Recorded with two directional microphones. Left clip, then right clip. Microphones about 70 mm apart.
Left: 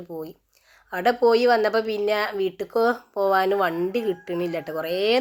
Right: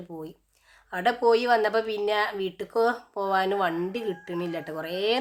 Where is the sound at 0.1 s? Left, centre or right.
Left.